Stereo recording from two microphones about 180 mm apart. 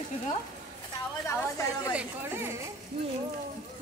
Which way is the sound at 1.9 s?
10° right (ahead or behind).